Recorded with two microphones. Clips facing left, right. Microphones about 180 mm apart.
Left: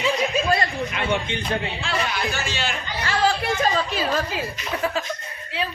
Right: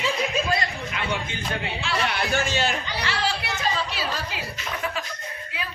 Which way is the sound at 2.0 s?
50° right (ahead or behind).